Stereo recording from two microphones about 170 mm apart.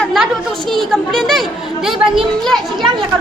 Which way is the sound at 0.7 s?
Centre (ahead or behind).